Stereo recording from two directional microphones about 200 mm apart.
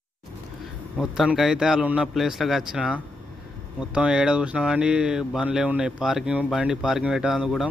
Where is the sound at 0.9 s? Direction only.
Centre (ahead or behind).